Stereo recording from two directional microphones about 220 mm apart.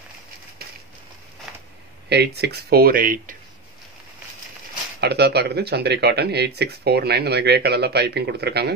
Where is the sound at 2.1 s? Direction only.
50° right (ahead or behind).